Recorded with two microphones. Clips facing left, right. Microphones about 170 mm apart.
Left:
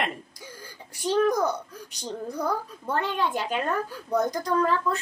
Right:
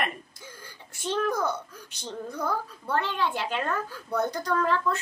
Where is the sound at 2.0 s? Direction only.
35° left (ahead or behind).